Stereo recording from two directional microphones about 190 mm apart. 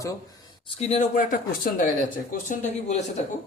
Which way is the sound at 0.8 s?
35° left (ahead or behind).